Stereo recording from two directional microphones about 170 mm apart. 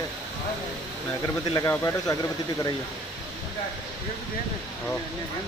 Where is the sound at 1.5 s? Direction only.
20° left (ahead or behind).